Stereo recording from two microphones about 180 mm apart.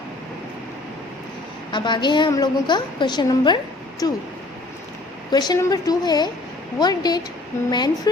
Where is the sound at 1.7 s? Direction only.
25° left (ahead or behind).